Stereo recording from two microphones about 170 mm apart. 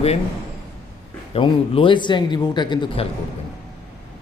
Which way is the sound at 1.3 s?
30° left (ahead or behind).